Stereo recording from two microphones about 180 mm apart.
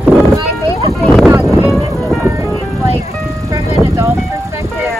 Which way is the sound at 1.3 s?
10° right (ahead or behind).